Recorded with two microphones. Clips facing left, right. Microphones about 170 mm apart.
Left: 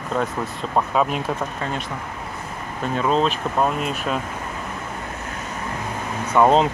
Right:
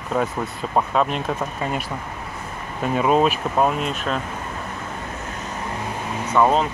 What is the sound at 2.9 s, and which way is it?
Speech, 10° right (ahead or behind).